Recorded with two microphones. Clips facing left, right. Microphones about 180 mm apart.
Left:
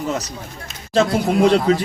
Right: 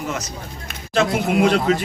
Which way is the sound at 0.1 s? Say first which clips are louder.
Left 3 dB; 35° left (ahead or behind).